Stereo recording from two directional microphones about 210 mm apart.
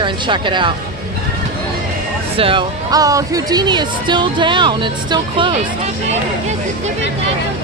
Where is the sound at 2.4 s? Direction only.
25° right (ahead or behind).